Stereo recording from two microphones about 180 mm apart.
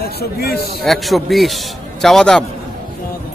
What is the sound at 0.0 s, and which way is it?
Speech, 60° left (ahead or behind).